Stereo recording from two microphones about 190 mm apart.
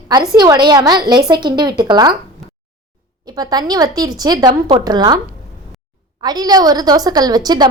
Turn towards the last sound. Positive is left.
turn(degrees=-20)  # may be behind; listen again after turning